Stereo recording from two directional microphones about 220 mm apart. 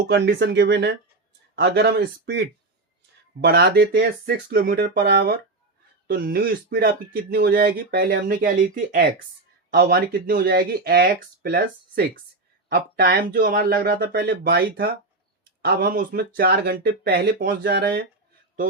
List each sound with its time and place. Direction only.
0.1 s speech: 45° right (ahead or behind)